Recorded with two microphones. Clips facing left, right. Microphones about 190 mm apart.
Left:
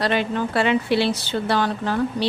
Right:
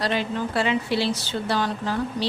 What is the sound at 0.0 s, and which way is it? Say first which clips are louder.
Speech: left 3 dB; 60° left (ahead or behind).